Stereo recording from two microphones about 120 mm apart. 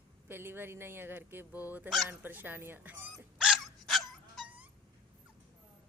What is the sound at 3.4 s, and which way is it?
Dog, 5° right (ahead or behind).